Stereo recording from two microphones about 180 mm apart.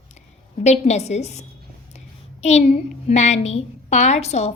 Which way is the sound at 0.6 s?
40° left (ahead or behind).